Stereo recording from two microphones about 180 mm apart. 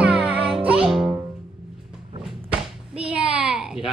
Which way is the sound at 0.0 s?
10° right (ahead or behind).